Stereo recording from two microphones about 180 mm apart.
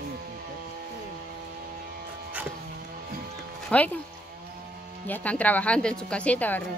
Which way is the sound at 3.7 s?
10° left (ahead or behind).